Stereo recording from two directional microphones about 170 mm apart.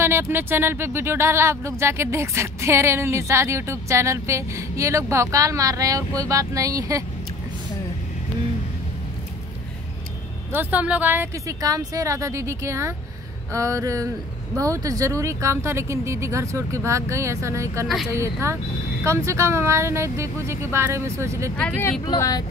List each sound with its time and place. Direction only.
0.0 s speech: 15° right (ahead or behind)
10.5 s speech: 10° right (ahead or behind)
13.5 s a sound: 20° right (ahead or behind)
14.6 s speech: 20° right (ahead or behind)
21.5 s speech: 10° left (ahead or behind)
22.0 s speech: 25° left (ahead or behind)